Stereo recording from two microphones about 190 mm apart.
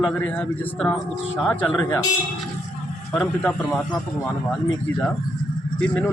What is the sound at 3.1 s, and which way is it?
A man's voice, 5° left (ahead or behind).